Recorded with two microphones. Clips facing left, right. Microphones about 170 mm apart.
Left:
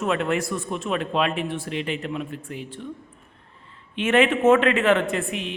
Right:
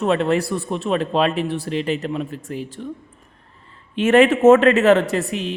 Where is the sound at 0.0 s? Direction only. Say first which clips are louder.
Right 5 dB; 30° right (ahead or behind).